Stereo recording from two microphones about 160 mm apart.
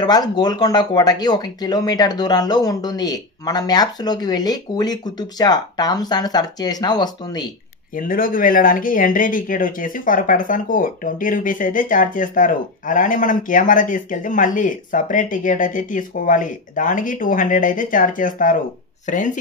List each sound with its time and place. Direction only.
0.0 s speech: 25° left (ahead or behind)
7.9 s speech: 60° left (ahead or behind)